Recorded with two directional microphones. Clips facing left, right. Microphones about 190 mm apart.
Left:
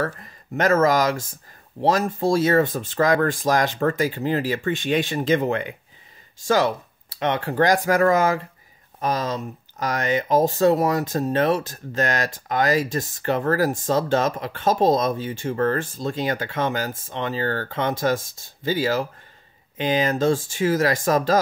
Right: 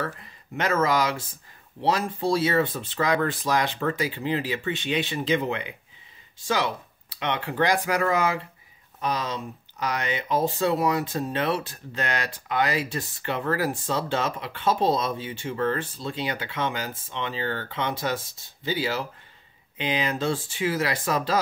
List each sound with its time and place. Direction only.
0.0 s speech: 45° left (ahead or behind)